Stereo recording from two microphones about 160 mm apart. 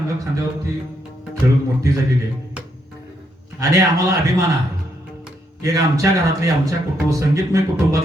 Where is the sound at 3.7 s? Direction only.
20° right (ahead or behind).